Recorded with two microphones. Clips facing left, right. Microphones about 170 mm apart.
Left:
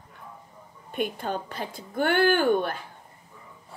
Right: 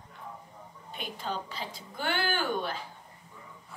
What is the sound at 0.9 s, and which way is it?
A woman's voice, 55° left (ahead or behind).